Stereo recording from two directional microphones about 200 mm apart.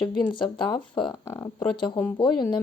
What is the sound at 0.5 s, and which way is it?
Speech, 25° left (ahead or behind).